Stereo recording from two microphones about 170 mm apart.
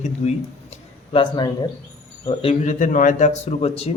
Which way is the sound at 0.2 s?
40° left (ahead or behind).